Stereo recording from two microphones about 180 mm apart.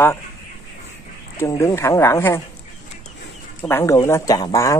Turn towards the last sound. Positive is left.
turn(degrees=15)  # may be behind; listen again after turning